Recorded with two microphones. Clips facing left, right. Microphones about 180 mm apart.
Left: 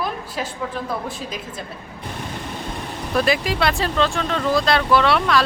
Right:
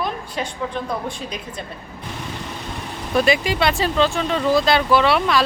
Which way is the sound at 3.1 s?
Centre (ahead or behind).